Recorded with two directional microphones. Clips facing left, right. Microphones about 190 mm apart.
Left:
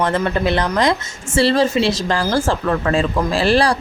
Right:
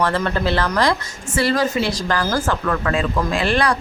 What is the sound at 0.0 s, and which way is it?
Speech, 20° left (ahead or behind).